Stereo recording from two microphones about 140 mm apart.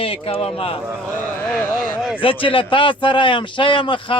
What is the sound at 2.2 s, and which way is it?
A man's voice, 40° left (ahead or behind).